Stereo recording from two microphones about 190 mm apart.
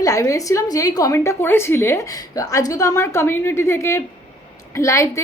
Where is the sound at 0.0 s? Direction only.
15° left (ahead or behind).